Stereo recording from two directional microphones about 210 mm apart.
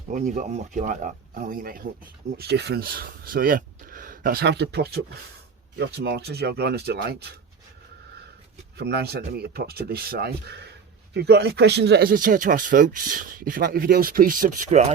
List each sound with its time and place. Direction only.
0.1 s a man's voice: 35° right (ahead or behind)
8.8 s a man's voice: 50° right (ahead or behind); by 14.9 s 35° right (ahead or behind)